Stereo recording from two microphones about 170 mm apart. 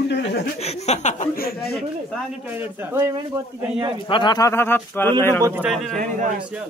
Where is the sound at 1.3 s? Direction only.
65° left (ahead or behind).